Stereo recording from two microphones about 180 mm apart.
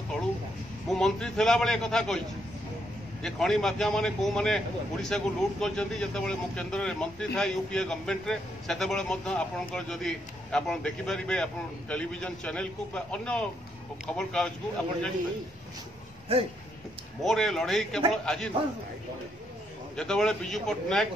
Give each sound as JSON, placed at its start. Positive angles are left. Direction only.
{"t": 0.8, "sound": "speech", "side_deg": 5}
{"t": 16.3, "sound": "speech", "side_deg": -30}
{"t": 17.2, "sound": "speech", "side_deg": 0}
{"t": 20.0, "sound": "speech", "side_deg": 5}